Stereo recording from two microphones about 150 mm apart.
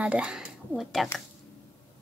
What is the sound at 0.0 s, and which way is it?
Speech, 5° right (ahead or behind).